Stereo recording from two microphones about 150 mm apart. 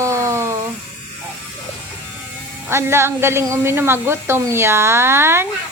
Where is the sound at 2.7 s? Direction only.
15° right (ahead or behind).